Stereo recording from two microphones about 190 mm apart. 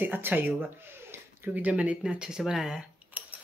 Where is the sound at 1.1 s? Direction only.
10° right (ahead or behind).